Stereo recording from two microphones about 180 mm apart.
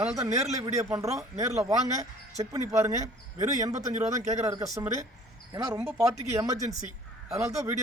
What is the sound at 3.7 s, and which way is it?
Speech, 40° right (ahead or behind).